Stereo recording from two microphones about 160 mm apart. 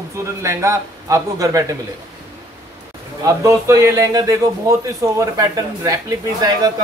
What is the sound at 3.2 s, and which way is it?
A man's voice, 20° right (ahead or behind).